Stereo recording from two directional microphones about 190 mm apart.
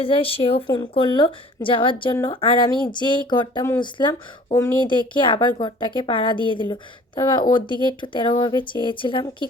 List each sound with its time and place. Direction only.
0.0 s speech: 30° left (ahead or behind)